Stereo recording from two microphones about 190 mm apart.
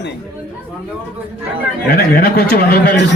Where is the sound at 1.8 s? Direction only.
55° left (ahead or behind).